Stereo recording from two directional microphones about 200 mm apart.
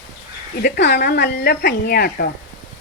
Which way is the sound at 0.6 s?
55° left (ahead or behind).